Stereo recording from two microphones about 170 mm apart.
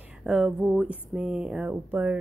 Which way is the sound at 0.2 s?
Centre (ahead or behind).